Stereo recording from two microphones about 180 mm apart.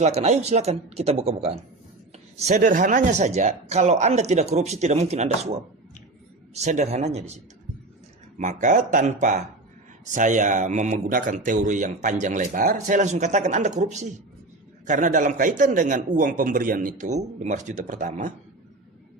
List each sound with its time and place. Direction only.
0.0 s speech: 40° right (ahead or behind)
8.4 s speech: 45° right (ahead or behind)